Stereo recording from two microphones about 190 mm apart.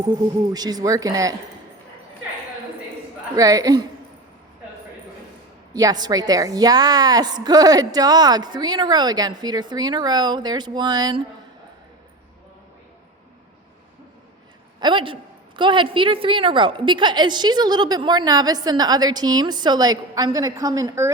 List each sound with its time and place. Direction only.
0.0 s a woman's voice: 20° right (ahead or behind)
3.3 s a woman's voice: 20° right (ahead or behind)
5.7 s a woman's voice: 20° right (ahead or behind)
14.8 s a woman's voice: 25° right (ahead or behind)